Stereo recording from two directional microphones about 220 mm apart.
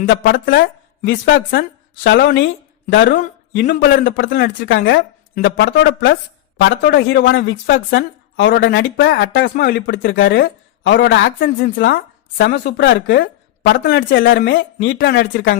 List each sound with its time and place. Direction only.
0.1 s a woman's voice: 50° left (ahead or behind)
4.0 s a woman's voice: 55° left (ahead or behind)